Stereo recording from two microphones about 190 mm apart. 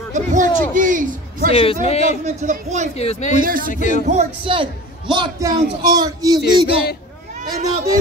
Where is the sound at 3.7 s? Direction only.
40° left (ahead or behind).